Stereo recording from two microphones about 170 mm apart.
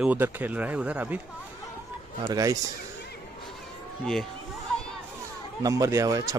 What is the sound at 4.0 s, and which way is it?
Speech, 5° left (ahead or behind).